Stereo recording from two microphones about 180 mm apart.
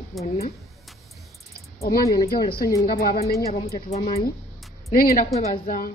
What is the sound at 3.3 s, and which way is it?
Speech, 20° left (ahead or behind).